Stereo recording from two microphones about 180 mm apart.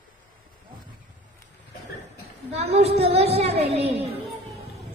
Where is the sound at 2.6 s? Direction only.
35° right (ahead or behind).